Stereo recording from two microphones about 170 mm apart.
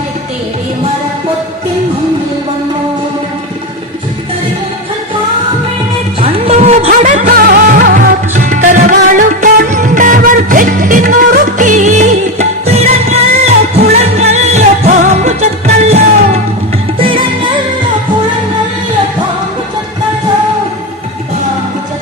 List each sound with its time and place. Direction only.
6.1 s music: 35° right (ahead or behind)